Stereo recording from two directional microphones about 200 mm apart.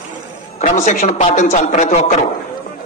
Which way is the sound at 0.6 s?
40° left (ahead or behind).